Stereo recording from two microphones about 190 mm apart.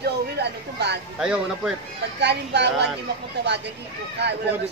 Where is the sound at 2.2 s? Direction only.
65° right (ahead or behind).